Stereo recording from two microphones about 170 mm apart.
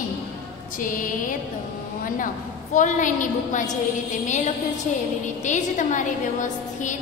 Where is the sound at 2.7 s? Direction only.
50° left (ahead or behind).